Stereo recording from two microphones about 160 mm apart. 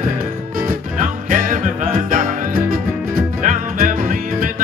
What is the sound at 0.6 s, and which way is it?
Music, 55° right (ahead or behind).